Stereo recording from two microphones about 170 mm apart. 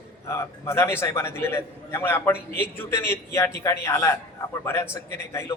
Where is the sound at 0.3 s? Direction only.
15° left (ahead or behind).